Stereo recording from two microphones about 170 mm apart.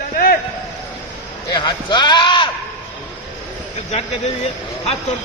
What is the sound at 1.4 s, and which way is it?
Sheep, 25° left (ahead or behind).